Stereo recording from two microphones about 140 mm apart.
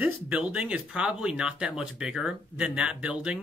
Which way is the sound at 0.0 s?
10° right (ahead or behind).